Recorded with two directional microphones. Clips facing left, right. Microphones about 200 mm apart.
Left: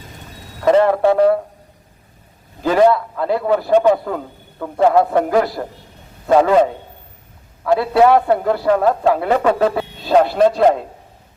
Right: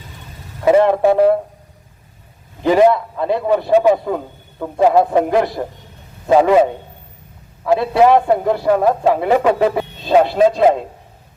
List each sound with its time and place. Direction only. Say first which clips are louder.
0.6 s speech: right 1 dB; 10° right (ahead or behind)
2.6 s a man's voice: right 1 dB; 15° right (ahead or behind)
3.7 s a man's voice: right 1 dB; 5° right (ahead or behind)
3.9 s a man's voice: right 2 dB; 20° right (ahead or behind)
7.8 s a man's voice: even; 20° right (ahead or behind)
10.1 s a man's voice: right 1 dB; 5° right (ahead or behind)